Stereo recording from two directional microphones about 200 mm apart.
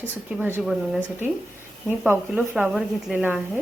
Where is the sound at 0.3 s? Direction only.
10° right (ahead or behind).